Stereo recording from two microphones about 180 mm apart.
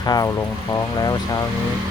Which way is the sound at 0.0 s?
20° left (ahead or behind).